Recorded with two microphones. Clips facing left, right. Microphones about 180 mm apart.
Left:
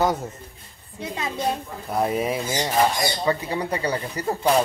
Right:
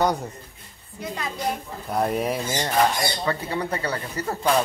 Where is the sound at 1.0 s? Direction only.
25° left (ahead or behind).